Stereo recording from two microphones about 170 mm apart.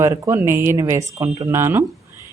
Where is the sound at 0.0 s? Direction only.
15° right (ahead or behind).